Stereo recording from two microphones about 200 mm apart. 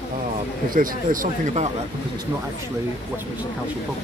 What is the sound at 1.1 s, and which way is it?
Speech, 45° right (ahead or behind).